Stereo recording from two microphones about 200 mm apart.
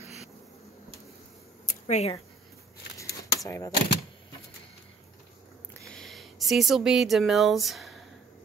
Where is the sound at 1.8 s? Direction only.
35° left (ahead or behind).